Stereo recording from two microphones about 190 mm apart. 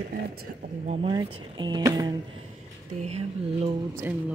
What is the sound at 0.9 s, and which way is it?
Speech, 25° right (ahead or behind).